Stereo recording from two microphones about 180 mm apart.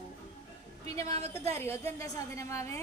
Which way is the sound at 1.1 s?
35° right (ahead or behind).